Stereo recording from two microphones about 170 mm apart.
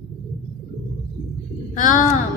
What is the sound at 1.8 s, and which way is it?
Speech, 50° left (ahead or behind).